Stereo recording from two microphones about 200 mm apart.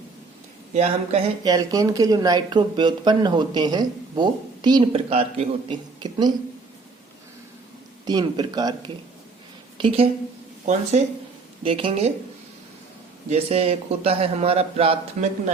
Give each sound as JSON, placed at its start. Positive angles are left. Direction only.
{"t": 0.7, "sound": "speech", "side_deg": -30}
{"t": 1.5, "sound": "speech", "side_deg": -20}
{"t": 8.0, "sound": "a woman's voice", "side_deg": -20}
{"t": 11.6, "sound": "speech", "side_deg": -25}
{"t": 13.3, "sound": "speech", "side_deg": -30}